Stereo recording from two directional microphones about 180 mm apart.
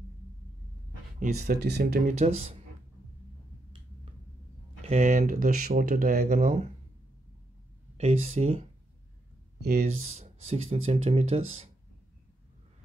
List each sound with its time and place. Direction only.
1.5 s speech: 60° right (ahead or behind)
2.1 s speech: 35° right (ahead or behind)
4.8 s speech: 45° right (ahead or behind)
8.0 s speech: 40° right (ahead or behind)
9.6 s speech: 60° right (ahead or behind)
9.8 s speech: 40° right (ahead or behind)